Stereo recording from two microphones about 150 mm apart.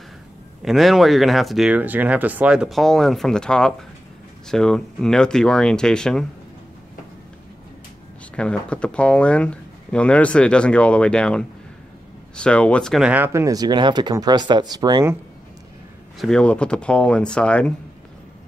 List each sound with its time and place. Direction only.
0.6 s speech: centre (ahead or behind)
8.4 s speech: 5° left (ahead or behind)
13.1 s speech: 15° right (ahead or behind)
16.2 s speech: 5° left (ahead or behind)